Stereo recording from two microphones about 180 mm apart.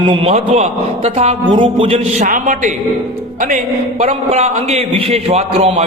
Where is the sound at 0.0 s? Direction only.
30° right (ahead or behind).